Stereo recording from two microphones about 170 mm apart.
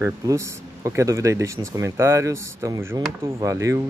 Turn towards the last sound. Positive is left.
turn(degrees=-20)  # may be behind; listen again after turning